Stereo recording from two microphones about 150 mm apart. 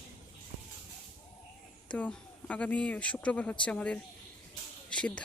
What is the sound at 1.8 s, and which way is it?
Speech, 10° left (ahead or behind).